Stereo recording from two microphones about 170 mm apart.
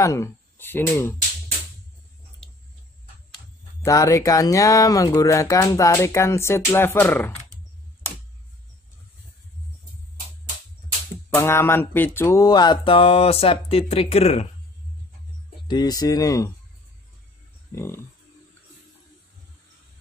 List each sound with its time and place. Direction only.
0.0 s speech: 20° left (ahead or behind)
3.8 s speech: 20° left (ahead or behind)
11.2 s a sound: 15° left (ahead or behind); by 14.5 s 40° left (ahead or behind)
15.7 s speech: 25° left (ahead or behind)
17.7 s speech: 15° left (ahead or behind)